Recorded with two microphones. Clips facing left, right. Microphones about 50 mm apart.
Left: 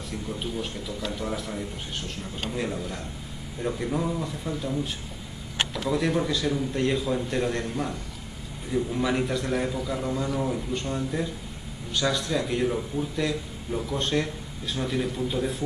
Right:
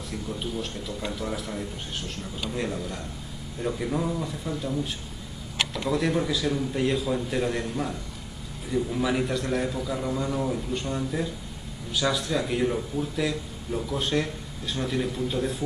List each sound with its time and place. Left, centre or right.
0.1 s a man's voice: centre
5.9 s a man's voice: centre